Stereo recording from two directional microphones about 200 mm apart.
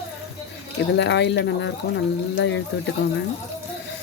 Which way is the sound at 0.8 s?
60° left (ahead or behind).